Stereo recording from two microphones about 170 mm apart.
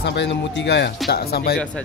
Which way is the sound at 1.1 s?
65° left (ahead or behind).